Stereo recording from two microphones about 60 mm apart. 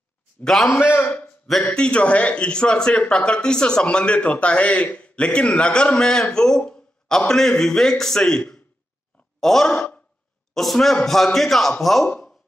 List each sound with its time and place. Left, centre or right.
0.4 s a man's voice: centre
0.7 s a man's voice: left
1.5 s a man's voice: centre